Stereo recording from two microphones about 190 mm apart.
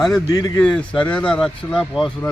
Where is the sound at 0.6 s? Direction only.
5° left (ahead or behind).